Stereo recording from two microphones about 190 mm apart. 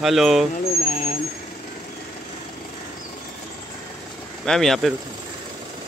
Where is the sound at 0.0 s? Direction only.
Centre (ahead or behind).